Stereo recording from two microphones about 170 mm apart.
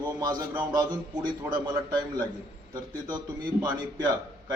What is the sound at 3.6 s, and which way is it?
Speech, 25° right (ahead or behind).